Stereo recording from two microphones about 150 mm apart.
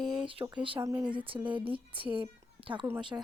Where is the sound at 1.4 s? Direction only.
35° right (ahead or behind).